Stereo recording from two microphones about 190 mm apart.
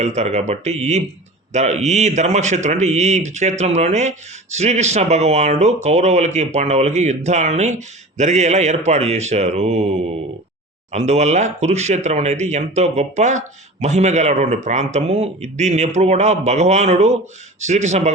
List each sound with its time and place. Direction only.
0.0 s speech: 35° right (ahead or behind)
10.9 s speech: 35° right (ahead or behind)